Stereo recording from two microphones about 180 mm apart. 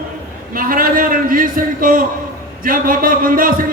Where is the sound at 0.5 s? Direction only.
50° right (ahead or behind).